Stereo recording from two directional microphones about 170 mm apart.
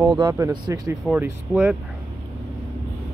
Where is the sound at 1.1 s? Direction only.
10° right (ahead or behind).